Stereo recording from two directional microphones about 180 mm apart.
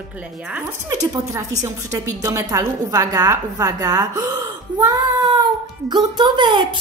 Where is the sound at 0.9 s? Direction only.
20° right (ahead or behind).